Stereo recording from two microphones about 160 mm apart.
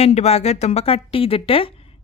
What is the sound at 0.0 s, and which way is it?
Speech, 40° left (ahead or behind).